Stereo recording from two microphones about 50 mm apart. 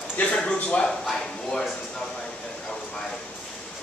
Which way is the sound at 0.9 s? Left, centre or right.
Centre.